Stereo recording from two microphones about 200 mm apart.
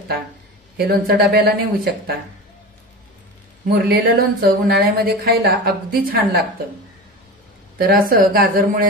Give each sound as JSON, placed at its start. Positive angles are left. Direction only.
{"t": 0.7, "sound": "speech", "side_deg": -50}
{"t": 3.7, "sound": "speech", "side_deg": -50}
{"t": 7.7, "sound": "speech", "side_deg": -45}